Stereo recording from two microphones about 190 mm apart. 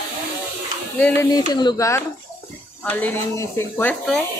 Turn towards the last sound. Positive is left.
turn(degrees=5)  # may be behind; listen again after turning